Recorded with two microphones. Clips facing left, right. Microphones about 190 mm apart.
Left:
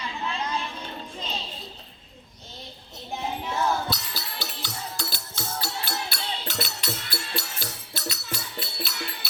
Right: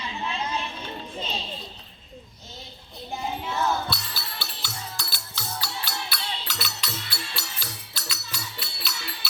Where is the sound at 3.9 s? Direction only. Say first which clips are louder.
Left 1 dB; 40° left (ahead or behind).